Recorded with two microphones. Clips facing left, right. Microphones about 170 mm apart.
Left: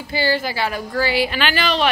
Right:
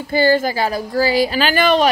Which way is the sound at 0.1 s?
45° right (ahead or behind).